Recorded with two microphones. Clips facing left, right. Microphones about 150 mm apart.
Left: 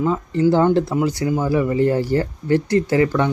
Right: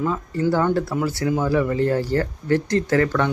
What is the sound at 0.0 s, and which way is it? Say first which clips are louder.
Speech: left 4 dB; 15° left (ahead or behind).